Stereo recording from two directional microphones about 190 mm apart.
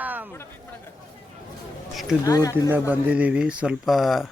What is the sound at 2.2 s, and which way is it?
Speech, 20° left (ahead or behind).